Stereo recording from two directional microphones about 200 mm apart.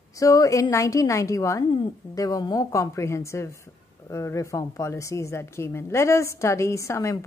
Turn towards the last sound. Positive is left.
turn(degrees=15)  # may be behind; listen again after turning